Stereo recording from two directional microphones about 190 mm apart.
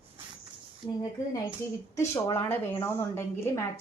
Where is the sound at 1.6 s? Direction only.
15° left (ahead or behind).